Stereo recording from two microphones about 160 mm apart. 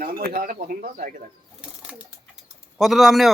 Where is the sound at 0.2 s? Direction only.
75° right (ahead or behind).